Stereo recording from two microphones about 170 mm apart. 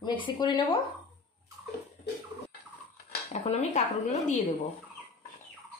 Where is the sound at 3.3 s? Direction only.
40° left (ahead or behind).